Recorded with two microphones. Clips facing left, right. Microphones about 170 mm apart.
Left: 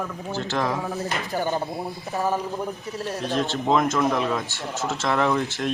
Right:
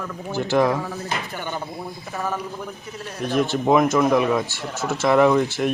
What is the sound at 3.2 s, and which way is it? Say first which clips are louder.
A man's voice: right 6 dB; 10° right (ahead or behind).